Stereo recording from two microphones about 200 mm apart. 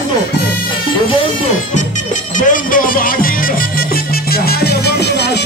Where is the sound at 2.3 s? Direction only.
40° left (ahead or behind).